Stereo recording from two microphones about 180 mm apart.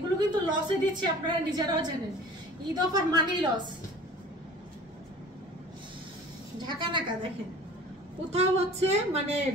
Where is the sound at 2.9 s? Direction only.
20° right (ahead or behind).